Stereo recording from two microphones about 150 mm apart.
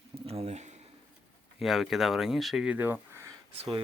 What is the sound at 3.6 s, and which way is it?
Speech, 35° right (ahead or behind).